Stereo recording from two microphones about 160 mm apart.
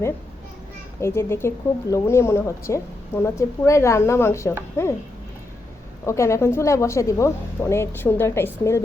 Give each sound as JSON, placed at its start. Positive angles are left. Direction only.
{"t": 1.0, "sound": "a woman's voice", "side_deg": 15}
{"t": 6.1, "sound": "a woman's voice", "side_deg": 20}